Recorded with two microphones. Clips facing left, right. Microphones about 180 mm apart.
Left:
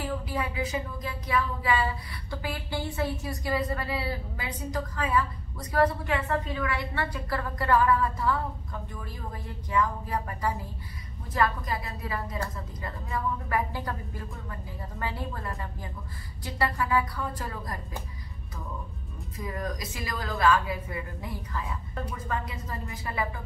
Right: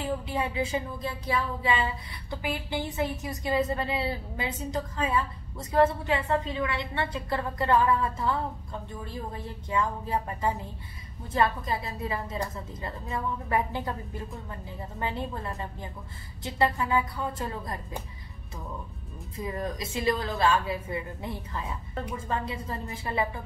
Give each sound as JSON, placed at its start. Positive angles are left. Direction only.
{"t": 0.0, "sound": "a woman's voice", "side_deg": -25}
{"t": 9.7, "sound": "a woman's voice", "side_deg": -25}
{"t": 19.3, "sound": "a woman's voice", "side_deg": -25}